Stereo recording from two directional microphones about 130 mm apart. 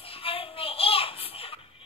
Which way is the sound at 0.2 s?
45° left (ahead or behind).